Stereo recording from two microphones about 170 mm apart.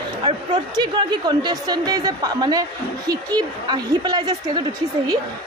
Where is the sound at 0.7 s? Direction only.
25° right (ahead or behind).